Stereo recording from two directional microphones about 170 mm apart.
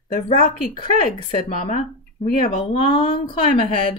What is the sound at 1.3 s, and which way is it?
Speech, 35° left (ahead or behind).